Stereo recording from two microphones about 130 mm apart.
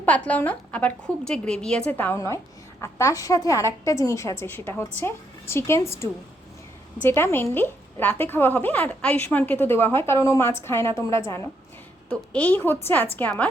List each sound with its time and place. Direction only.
0.0 s a woman's voice: 10° left (ahead or behind)
12.0 s a woman's voice: 10° left (ahead or behind)